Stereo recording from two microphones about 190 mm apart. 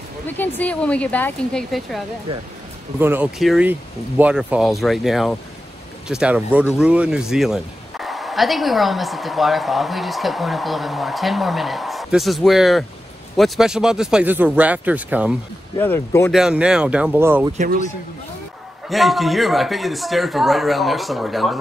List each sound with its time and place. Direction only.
0.3 s speech: 10° left (ahead or behind)
3.0 s a man's voice: 10° right (ahead or behind)
15.8 s speech: 10° left (ahead or behind)
16.3 s a man's voice: 5° right (ahead or behind)
18.9 s a man's voice: centre (ahead or behind)